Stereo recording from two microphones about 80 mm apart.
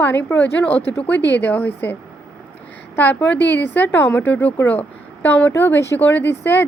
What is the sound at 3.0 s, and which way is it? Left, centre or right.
A woman's voice, left.